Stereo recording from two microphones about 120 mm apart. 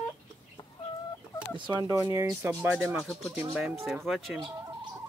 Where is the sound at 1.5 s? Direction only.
40° right (ahead or behind).